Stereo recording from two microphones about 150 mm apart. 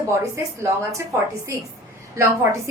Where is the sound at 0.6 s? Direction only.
20° right (ahead or behind).